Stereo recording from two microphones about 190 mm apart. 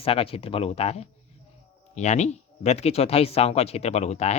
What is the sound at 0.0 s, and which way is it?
Speech, 30° left (ahead or behind).